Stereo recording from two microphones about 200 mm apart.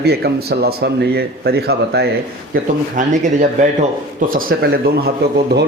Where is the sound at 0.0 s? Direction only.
55° right (ahead or behind).